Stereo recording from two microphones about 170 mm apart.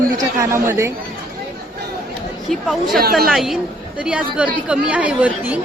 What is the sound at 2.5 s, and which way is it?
A woman's voice, centre (ahead or behind).